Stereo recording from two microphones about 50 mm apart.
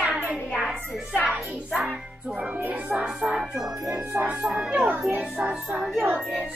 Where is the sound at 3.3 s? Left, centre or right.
Centre.